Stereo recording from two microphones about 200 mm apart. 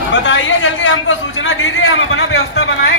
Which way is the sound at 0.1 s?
65° left (ahead or behind).